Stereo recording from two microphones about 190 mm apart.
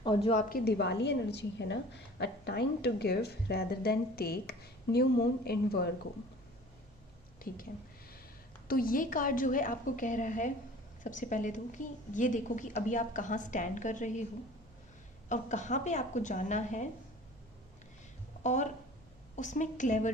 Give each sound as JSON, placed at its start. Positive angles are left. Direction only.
{"t": 0.0, "sound": "a woman's voice", "side_deg": 30}
{"t": 0.4, "sound": "a woman's voice", "side_deg": 55}
{"t": 7.3, "sound": "a woman's voice", "side_deg": 50}
{"t": 15.3, "sound": "a woman's voice", "side_deg": 40}
{"t": 18.4, "sound": "a woman's voice", "side_deg": 40}